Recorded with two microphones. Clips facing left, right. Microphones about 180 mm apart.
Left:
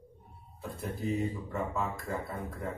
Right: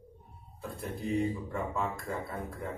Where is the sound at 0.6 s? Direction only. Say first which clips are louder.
Left 1 dB; centre (ahead or behind).